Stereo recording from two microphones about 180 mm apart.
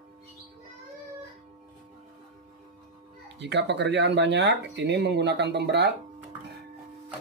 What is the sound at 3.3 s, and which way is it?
Speech, 75° right (ahead or behind).